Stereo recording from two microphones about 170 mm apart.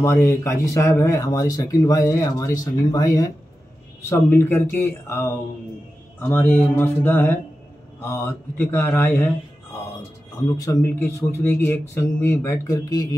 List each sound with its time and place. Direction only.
0.0 s speech: 15° left (ahead or behind)
11.0 s speech: 15° left (ahead or behind)